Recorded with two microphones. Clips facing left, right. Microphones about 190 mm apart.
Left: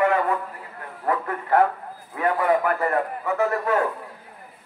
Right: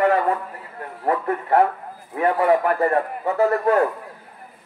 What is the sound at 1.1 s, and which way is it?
A man's voice, 25° right (ahead or behind).